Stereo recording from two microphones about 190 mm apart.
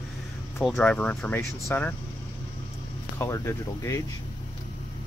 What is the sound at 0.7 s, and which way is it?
Speech, 5° left (ahead or behind).